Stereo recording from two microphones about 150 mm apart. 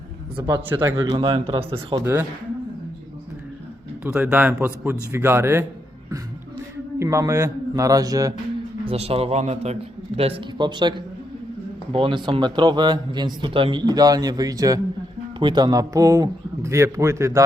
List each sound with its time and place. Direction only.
0.3 s a man's voice: 25° right (ahead or behind)
0.7 s speech: 15° right (ahead or behind)
1.0 s a man's voice: 30° right (ahead or behind)
4.0 s speech: 10° right (ahead or behind)
7.0 s a man's voice: 20° right (ahead or behind)
8.8 s a man's voice: 40° right (ahead or behind); by 17.4 s 20° right (ahead or behind)